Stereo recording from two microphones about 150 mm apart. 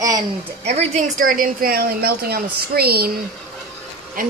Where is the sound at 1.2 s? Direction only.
70° right (ahead or behind); by 3.1 s 90° right.